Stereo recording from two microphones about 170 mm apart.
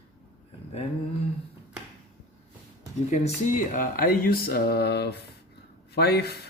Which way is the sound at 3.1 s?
45° left (ahead or behind).